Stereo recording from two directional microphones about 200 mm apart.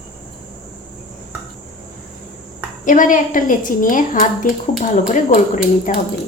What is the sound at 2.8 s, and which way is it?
A woman's voice, 40° left (ahead or behind).